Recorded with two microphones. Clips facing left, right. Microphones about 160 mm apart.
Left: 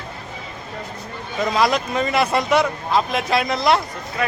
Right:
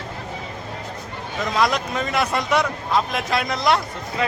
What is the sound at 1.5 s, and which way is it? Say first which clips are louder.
Speech: left 1 dB; centre (ahead or behind).